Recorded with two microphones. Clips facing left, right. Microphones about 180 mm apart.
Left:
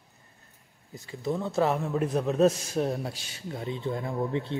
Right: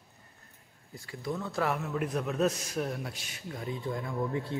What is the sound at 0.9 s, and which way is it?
A man's voice, 25° left (ahead or behind).